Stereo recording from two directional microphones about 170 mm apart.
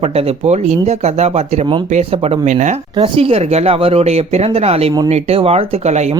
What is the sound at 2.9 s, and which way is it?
Speech, 35° right (ahead or behind).